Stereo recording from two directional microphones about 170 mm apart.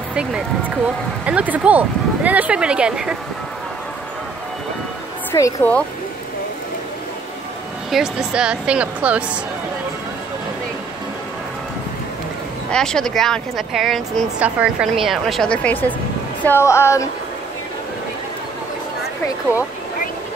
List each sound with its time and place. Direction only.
0.1 s speech: 5° right (ahead or behind)
5.3 s speech: 15° left (ahead or behind)
7.9 s speech: 5° right (ahead or behind)
12.7 s speech: 5° left (ahead or behind)